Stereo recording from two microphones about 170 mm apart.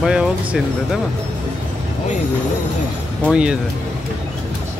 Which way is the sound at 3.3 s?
5° right (ahead or behind).